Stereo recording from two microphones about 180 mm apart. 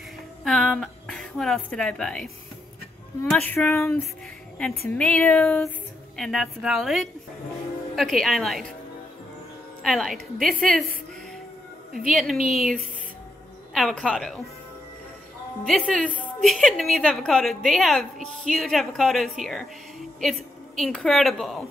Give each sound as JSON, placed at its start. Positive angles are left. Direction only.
{"t": 0.4, "sound": "a woman's voice", "side_deg": 0}
{"t": 9.8, "sound": "a woman's voice", "side_deg": 0}
{"t": 12.0, "sound": "a woman's voice", "side_deg": 0}
{"t": 13.7, "sound": "a woman's voice", "side_deg": 0}
{"t": 15.6, "sound": "a woman's voice", "side_deg": 0}